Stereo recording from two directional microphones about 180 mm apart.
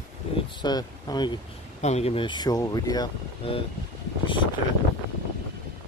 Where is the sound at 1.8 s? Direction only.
35° left (ahead or behind).